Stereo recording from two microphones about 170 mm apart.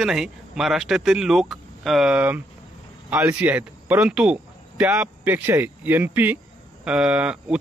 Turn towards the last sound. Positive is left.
turn(degrees=-5)  # may be behind; listen again after turning